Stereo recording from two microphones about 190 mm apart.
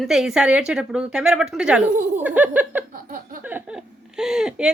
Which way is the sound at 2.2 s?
5° right (ahead or behind).